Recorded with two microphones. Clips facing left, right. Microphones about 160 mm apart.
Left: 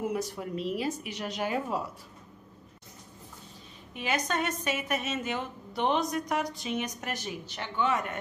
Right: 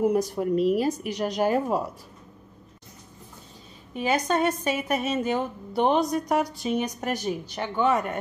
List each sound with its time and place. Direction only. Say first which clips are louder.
0.0 s a woman's voice: right 9 dB; 40° right (ahead or behind)
3.9 s a woman's voice: right 7 dB; 40° right (ahead or behind)